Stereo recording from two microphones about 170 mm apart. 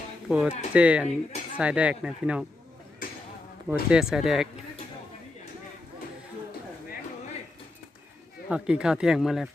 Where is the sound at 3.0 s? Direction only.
55° left (ahead or behind).